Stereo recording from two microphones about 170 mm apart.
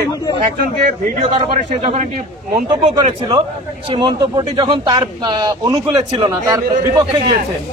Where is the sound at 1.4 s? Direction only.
35° right (ahead or behind).